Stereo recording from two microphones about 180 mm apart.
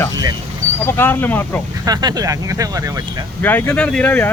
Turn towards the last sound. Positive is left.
turn(degrees=10)  # may be behind; listen again after turning